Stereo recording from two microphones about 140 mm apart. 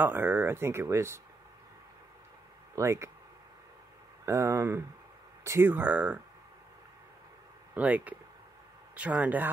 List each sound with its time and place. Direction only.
0.0 s speech: 15° right (ahead or behind)
2.7 s speech: 20° right (ahead or behind)
4.3 s speech: 20° right (ahead or behind)
7.7 s speech: 10° right (ahead or behind)